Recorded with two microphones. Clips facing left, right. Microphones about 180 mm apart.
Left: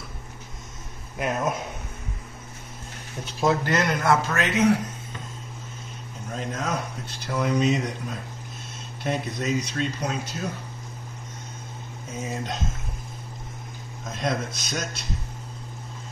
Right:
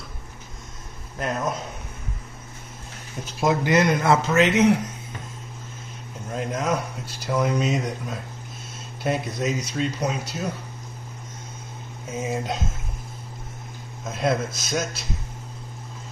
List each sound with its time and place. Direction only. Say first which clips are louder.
1.1 s speech: left 1 dB; 5° left (ahead or behind)
3.3 s speech: right 3 dB; 15° right (ahead or behind)
6.3 s speech: right 4 dB; 5° right (ahead or behind)
12.1 s speech: right 4 dB; 10° right (ahead or behind)
14.0 s speech: right 4 dB; 5° right (ahead or behind)